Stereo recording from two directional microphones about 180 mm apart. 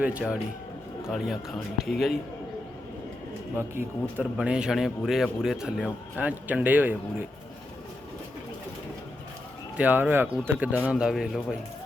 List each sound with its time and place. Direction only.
0.0 s speech: 5° right (ahead or behind)
3.8 s speech: 5° right (ahead or behind)
9.7 s speech: 10° right (ahead or behind)